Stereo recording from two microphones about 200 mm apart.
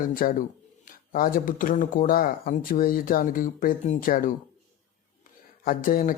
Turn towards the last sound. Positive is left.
turn(degrees=45)  # may be behind; listen again after turning